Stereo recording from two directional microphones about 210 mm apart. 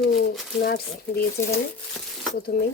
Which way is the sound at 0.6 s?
50° left (ahead or behind).